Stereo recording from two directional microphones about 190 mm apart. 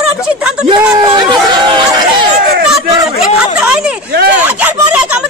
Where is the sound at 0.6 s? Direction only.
20° right (ahead or behind).